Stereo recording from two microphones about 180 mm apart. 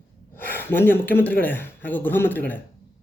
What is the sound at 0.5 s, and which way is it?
A man's voice, 10° left (ahead or behind).